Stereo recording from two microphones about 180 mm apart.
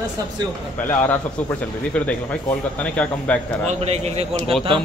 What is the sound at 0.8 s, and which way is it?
A man's voice, 10° left (ahead or behind).